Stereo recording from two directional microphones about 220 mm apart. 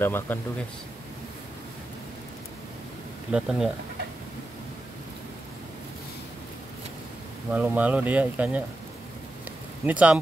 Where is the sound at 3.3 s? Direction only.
Centre (ahead or behind).